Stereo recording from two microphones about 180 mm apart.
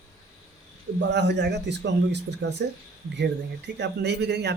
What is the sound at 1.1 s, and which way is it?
Speech, 70° right (ahead or behind).